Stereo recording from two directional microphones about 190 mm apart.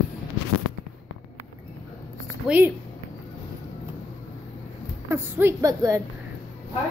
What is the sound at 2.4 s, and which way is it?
Speech, centre (ahead or behind).